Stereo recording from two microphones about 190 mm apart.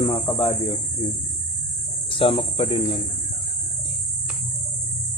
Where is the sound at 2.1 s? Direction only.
25° left (ahead or behind).